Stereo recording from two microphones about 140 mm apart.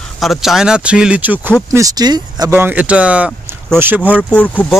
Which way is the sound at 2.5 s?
15° right (ahead or behind).